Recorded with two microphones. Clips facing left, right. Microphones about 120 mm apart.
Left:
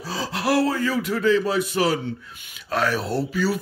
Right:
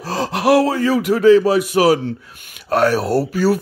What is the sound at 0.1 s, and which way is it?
Speech, 65° right (ahead or behind).